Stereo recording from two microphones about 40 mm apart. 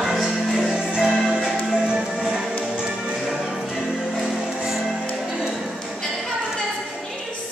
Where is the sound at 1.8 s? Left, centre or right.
Right.